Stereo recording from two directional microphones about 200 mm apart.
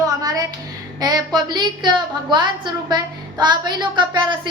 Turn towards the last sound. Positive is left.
turn(degrees=-25)  # may be behind; listen again after turning